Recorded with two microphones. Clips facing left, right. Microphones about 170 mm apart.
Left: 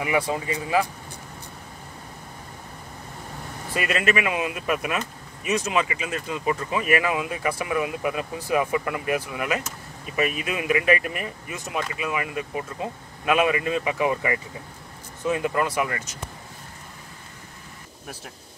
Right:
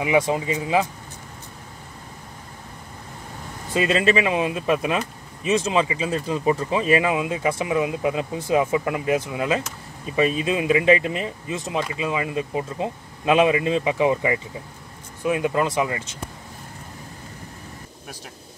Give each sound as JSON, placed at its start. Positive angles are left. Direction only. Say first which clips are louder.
{"t": 0.0, "sound": "speech", "louder": "right 4 dB", "side_deg": -20}
{"t": 3.7, "sound": "speech", "louder": "right 4 dB", "side_deg": -25}